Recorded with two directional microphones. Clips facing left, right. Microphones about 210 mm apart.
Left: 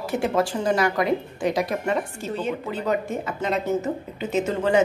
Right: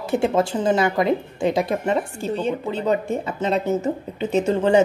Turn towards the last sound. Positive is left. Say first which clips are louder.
# right 4 dB
turn(degrees=-30)  # may be behind; listen again after turning